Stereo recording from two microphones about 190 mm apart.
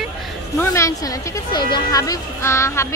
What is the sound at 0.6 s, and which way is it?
Speech, 15° left (ahead or behind).